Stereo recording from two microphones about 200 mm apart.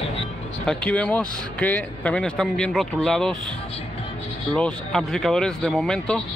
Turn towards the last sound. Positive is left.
turn(degrees=5)  # may be behind; listen again after turning